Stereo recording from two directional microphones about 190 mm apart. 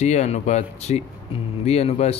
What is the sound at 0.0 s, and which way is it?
Speech, 35° left (ahead or behind).